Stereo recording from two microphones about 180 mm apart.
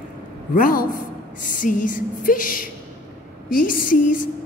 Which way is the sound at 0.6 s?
50° left (ahead or behind).